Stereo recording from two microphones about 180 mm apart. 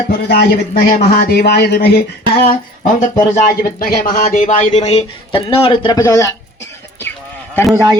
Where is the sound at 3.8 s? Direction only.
55° left (ahead or behind); by 6.3 s 15° left (ahead or behind).